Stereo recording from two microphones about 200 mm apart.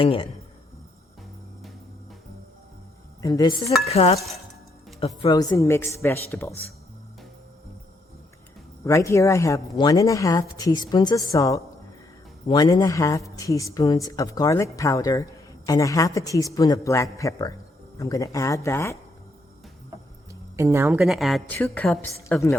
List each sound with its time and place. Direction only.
0.0 s a woman's voice: 25° left (ahead or behind)
3.2 s speech: 15° left (ahead or behind)
3.8 s cutlery: 30° left (ahead or behind)
4.9 s a woman's voice: 25° left (ahead or behind); by 6.7 s 10° left (ahead or behind)
8.8 s speech: 15° left (ahead or behind)
20.6 s speech: 15° right (ahead or behind)
21.0 s a woman's voice: centre (ahead or behind)